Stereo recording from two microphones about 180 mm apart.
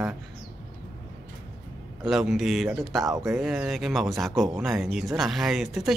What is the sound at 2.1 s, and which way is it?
Speech, centre (ahead or behind).